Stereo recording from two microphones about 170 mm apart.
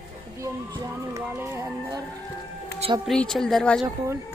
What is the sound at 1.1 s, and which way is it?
Speech, 15° right (ahead or behind).